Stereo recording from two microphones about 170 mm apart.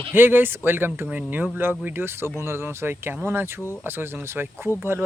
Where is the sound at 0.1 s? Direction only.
10° right (ahead or behind).